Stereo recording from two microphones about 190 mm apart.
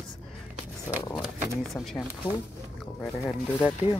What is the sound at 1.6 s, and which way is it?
Speech, centre (ahead or behind).